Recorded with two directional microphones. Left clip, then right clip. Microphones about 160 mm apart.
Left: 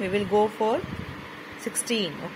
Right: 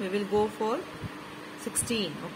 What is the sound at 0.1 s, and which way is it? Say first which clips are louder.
Speech: left 5 dB; 20° left (ahead or behind).